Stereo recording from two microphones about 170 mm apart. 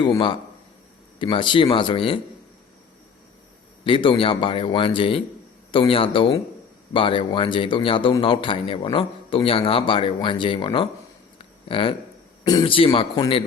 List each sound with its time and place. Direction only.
0.0 s speech: 25° left (ahead or behind)
3.8 s speech: 30° left (ahead or behind)